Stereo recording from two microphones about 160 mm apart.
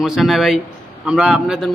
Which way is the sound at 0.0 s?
Centre (ahead or behind).